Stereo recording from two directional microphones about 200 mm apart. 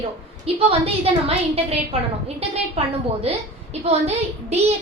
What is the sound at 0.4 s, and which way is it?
A woman's voice, 30° right (ahead or behind).